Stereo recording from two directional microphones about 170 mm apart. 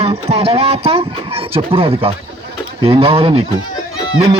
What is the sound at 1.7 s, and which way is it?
Speech, 35° right (ahead or behind).